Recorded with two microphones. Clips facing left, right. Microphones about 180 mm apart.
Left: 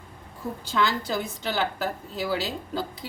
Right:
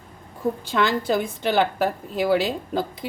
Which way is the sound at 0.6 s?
55° right (ahead or behind).